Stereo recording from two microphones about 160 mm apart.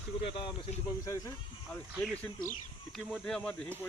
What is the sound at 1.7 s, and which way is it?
Speech, 10° left (ahead or behind).